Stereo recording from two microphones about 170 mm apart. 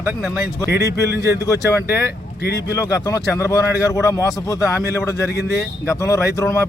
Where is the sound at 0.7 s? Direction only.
70° left (ahead or behind).